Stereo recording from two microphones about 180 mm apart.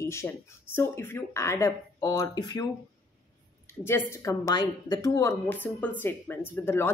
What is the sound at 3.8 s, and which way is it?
Speech, 15° left (ahead or behind).